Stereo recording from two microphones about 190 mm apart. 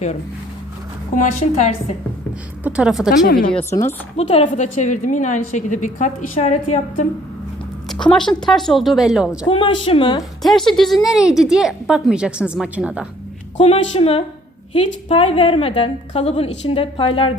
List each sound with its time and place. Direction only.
1.1 s a woman's voice: 40° left (ahead or behind)
2.6 s a woman's voice: 5° right (ahead or behind)
3.5 s speech: 10° left (ahead or behind)
4.2 s a woman's voice: 35° left (ahead or behind)
7.9 s a woman's voice: 5° left (ahead or behind)
9.5 s a woman's voice: 25° left (ahead or behind)
10.4 s a woman's voice: centre (ahead or behind)
13.6 s a woman's voice: 35° left (ahead or behind)